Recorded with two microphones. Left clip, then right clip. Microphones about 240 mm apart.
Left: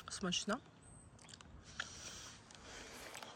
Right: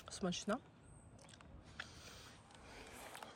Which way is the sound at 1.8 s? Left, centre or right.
Centre.